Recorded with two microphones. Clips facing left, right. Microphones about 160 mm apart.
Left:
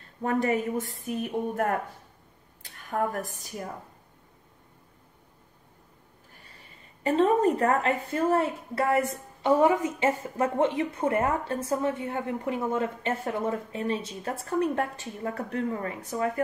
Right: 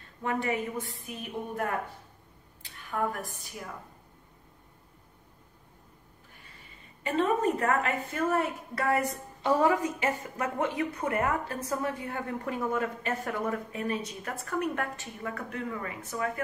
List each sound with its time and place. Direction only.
0.2 s a woman's voice: 40° left (ahead or behind)
2.9 s a woman's voice: 45° left (ahead or behind)
7.0 s a woman's voice: 35° left (ahead or behind)